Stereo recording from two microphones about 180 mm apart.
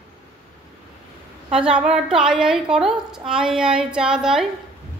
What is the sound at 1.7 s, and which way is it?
A woman's voice, 5° right (ahead or behind).